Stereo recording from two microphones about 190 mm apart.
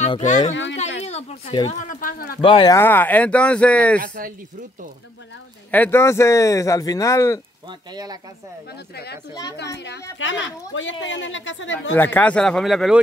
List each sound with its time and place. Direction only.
0.0 s speech: 35° left (ahead or behind)
1.7 s speech: 45° left (ahead or behind)
2.4 s speech: 25° left (ahead or behind)
2.8 s speech: 10° left (ahead or behind)
4.0 s speech: 45° right (ahead or behind)
5.7 s speech: 10° left (ahead or behind)
7.9 s speech: 20° right (ahead or behind)
8.9 s a woman's voice: 60° left (ahead or behind)
9.3 s speech: 20° left (ahead or behind)
10.1 s a woman's voice: 75° left (ahead or behind)
11.9 s speech: 10° left (ahead or behind)